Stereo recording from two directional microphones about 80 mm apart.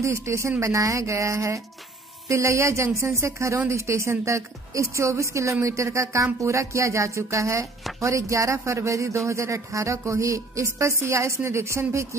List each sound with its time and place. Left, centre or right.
0.0 s a woman's voice: right